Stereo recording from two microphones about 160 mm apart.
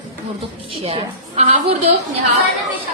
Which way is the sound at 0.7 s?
35° right (ahead or behind).